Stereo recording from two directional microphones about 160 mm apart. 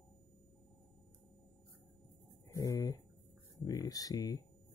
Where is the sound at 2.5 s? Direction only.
20° left (ahead or behind).